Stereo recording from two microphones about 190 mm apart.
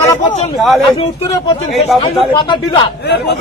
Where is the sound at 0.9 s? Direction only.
20° left (ahead or behind).